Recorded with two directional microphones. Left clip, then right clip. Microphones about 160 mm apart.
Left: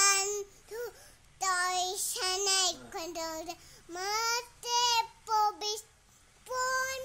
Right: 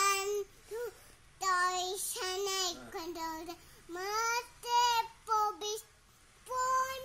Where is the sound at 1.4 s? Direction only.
30° left (ahead or behind).